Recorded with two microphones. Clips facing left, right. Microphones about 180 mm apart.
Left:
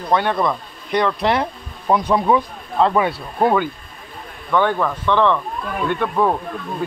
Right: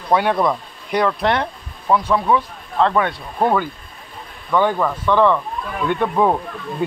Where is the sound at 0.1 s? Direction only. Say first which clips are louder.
Right 2 dB; 10° right (ahead or behind).